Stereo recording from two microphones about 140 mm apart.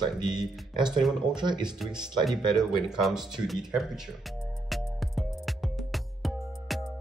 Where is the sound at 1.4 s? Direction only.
30° right (ahead or behind).